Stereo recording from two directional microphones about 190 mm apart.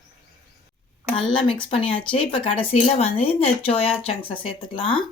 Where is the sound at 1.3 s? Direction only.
25° left (ahead or behind).